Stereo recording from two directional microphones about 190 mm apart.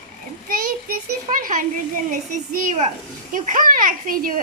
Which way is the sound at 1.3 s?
45° right (ahead or behind).